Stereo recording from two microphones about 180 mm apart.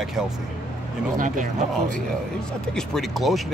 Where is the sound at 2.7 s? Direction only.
Centre (ahead or behind).